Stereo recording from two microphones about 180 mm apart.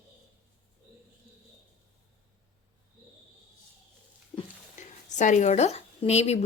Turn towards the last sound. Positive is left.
turn(degrees=35)  # may be behind; listen again after turning